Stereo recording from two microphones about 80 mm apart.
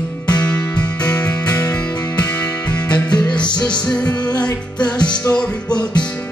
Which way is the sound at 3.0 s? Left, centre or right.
Centre.